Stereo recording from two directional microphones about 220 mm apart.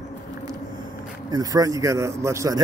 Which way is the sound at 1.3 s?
15° right (ahead or behind).